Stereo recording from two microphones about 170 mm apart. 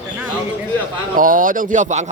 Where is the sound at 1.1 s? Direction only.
55° right (ahead or behind).